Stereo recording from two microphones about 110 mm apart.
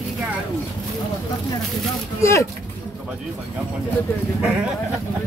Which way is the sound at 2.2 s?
25° left (ahead or behind).